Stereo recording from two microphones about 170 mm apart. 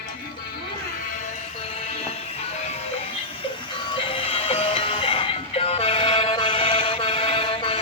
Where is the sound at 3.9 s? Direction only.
30° left (ahead or behind).